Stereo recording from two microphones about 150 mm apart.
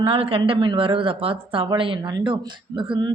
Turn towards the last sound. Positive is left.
turn(degrees=-30)  # may be behind; listen again after turning